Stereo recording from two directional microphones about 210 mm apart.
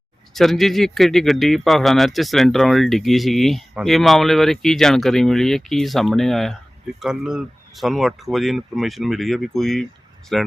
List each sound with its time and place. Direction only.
0.3 s speech: centre (ahead or behind)